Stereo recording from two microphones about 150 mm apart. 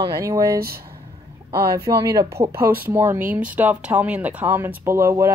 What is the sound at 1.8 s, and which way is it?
Speech, 20° right (ahead or behind).